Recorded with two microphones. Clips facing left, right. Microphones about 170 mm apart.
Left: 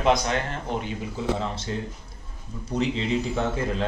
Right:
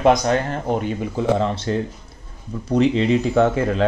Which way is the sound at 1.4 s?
65° right (ahead or behind).